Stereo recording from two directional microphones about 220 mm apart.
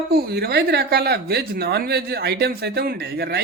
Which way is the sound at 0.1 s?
45° right (ahead or behind).